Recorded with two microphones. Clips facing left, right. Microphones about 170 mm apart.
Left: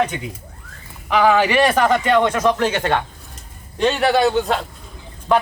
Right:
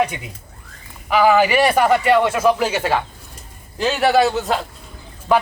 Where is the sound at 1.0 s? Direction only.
5° right (ahead or behind).